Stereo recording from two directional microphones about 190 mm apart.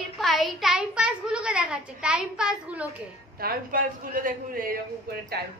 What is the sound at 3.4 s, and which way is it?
A man's voice, 50° right (ahead or behind).